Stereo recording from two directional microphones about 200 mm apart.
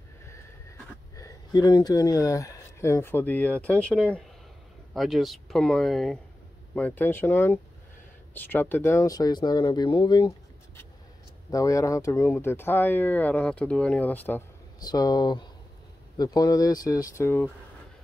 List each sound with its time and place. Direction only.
1.1 s speech: 15° left (ahead or behind)
11.5 s speech: 15° left (ahead or behind)